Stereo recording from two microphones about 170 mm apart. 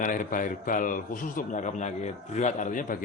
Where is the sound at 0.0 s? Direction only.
50° left (ahead or behind).